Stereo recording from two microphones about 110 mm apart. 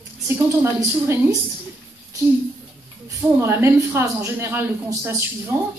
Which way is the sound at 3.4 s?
25° right (ahead or behind).